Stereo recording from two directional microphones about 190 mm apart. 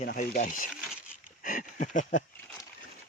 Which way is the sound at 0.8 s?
Centre (ahead or behind).